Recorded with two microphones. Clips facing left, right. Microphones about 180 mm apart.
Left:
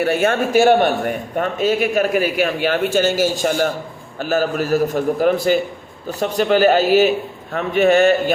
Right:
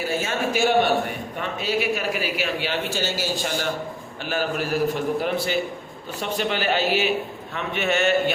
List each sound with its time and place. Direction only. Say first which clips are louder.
0.0 s a man's voice: left 8 dB; 60° left (ahead or behind); by 8.1 s 40° left (ahead or behind)